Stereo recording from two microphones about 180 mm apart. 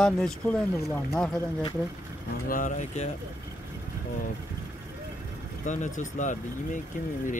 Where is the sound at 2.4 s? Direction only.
45° left (ahead or behind).